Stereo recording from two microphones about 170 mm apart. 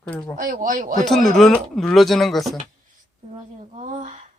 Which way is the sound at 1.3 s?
Centre (ahead or behind).